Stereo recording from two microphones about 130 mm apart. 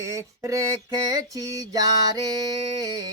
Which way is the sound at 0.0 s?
25° right (ahead or behind).